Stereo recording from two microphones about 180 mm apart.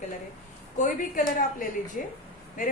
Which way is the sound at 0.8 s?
45° left (ahead or behind).